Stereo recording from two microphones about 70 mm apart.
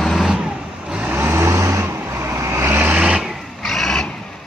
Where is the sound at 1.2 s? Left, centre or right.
Right.